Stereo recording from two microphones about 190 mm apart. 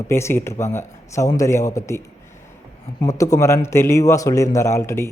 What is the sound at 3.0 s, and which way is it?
Speech, 15° left (ahead or behind).